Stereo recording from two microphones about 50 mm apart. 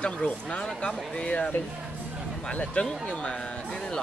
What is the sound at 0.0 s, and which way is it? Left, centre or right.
Speech, left.